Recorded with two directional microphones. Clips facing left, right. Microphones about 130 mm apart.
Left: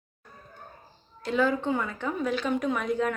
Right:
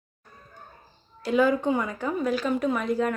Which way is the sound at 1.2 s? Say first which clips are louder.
Right 4 dB; 10° right (ahead or behind).